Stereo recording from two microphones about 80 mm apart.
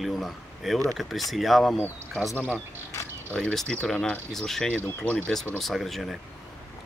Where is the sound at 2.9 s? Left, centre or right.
Left.